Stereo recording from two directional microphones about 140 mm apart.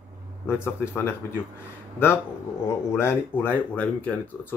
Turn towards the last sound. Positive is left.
turn(degrees=10)  # may be behind; listen again after turning